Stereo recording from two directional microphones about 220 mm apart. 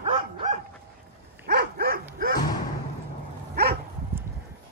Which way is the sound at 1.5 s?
45° right (ahead or behind).